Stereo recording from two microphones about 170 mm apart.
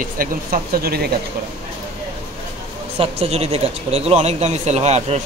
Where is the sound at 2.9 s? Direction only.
35° right (ahead or behind).